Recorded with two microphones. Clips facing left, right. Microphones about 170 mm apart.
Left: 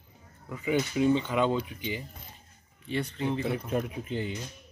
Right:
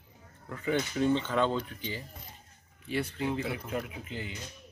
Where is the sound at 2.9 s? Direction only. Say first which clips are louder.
Left 1 dB; 5° right (ahead or behind).